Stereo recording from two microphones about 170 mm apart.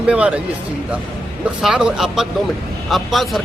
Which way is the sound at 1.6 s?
5° right (ahead or behind).